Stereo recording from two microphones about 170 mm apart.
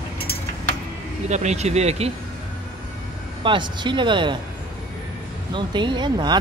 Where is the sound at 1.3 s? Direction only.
45° right (ahead or behind).